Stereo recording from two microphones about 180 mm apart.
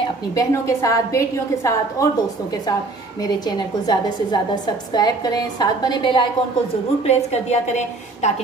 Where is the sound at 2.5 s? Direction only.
20° left (ahead or behind).